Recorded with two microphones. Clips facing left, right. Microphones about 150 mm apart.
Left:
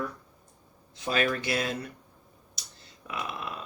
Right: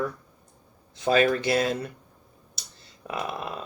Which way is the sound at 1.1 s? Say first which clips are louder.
Right 7 dB; 35° right (ahead or behind).